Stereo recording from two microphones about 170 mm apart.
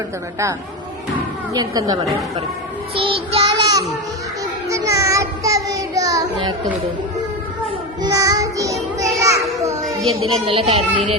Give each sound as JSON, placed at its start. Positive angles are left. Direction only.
{"t": 1.5, "sound": "speech", "side_deg": -20}
{"t": 2.9, "sound": "child singing", "side_deg": -30}
{"t": 8.0, "sound": "child singing", "side_deg": -20}
{"t": 10.4, "sound": "speech", "side_deg": -30}